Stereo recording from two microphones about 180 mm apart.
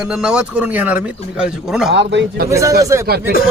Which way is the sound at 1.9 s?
65° right (ahead or behind).